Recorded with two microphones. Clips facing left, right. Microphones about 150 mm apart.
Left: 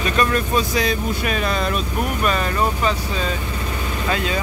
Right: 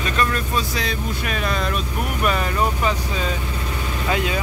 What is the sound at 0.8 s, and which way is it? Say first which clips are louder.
Speech: left 5 dB; 10° left (ahead or behind).